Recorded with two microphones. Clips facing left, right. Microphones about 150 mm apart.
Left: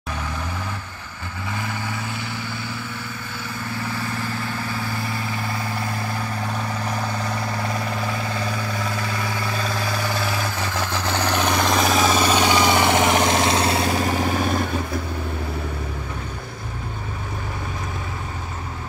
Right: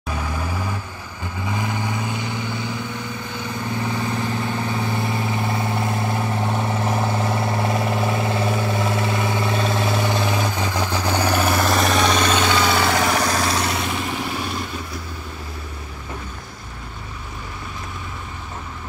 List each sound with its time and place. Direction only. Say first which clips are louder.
0.1 s vehicle: right 3 dB; 10° right (ahead or behind); by 14.7 s 50° left (ahead or behind)